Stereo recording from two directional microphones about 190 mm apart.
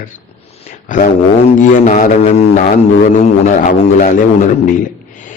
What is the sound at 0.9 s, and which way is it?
Speech, 40° left (ahead or behind).